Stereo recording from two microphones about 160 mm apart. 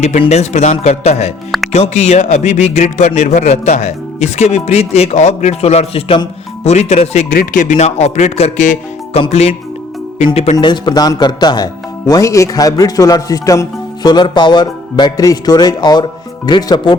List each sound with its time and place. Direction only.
0.0 s speech: 45° left (ahead or behind)
10.6 s speech: 30° left (ahead or behind)